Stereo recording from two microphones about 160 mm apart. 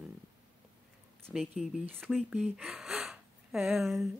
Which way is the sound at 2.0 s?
Centre (ahead or behind).